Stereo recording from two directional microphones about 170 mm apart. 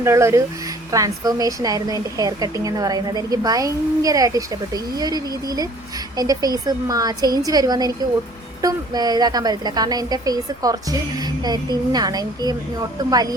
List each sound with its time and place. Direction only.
0.0 s a woman's voice: 15° right (ahead or behind)